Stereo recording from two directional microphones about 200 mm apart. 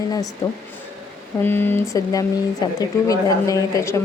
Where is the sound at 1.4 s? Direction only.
10° left (ahead or behind).